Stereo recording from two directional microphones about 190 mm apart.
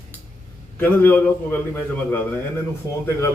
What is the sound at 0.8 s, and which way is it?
Speech, 10° left (ahead or behind).